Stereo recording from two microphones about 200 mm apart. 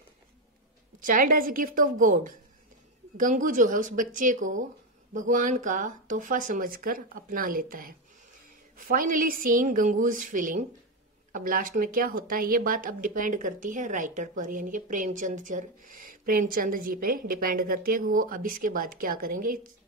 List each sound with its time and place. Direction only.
0.9 s speech: 40° right (ahead or behind)
8.7 s a woman's voice: 45° right (ahead or behind)